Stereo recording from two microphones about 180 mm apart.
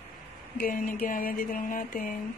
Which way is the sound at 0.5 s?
50° left (ahead or behind).